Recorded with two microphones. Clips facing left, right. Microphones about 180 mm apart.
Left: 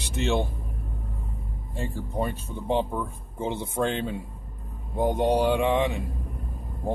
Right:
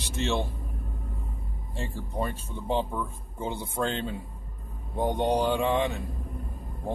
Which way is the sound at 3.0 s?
25° left (ahead or behind).